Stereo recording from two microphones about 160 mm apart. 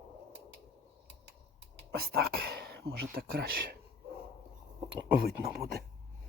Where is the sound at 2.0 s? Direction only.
80° right.